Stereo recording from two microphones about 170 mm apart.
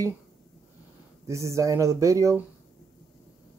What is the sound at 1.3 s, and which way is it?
Speech, 15° right (ahead or behind).